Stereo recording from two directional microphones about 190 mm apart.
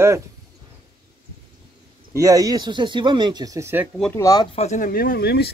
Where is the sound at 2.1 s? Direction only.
15° right (ahead or behind).